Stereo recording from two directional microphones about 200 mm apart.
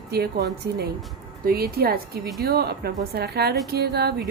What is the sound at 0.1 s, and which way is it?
Speech, 50° right (ahead or behind).